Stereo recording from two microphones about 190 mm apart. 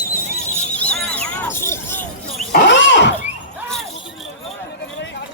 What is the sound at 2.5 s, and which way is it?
Roaring cats, 65° left (ahead or behind).